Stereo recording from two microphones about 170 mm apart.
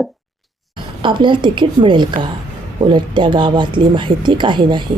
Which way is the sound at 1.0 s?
30° right (ahead or behind).